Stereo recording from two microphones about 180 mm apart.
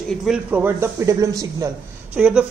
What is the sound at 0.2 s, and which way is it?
Speech, 5° right (ahead or behind).